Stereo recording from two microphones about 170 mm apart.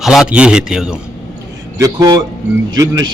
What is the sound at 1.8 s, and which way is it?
Speech, 20° right (ahead or behind).